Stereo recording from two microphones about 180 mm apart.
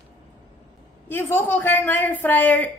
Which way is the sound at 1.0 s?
10° left (ahead or behind).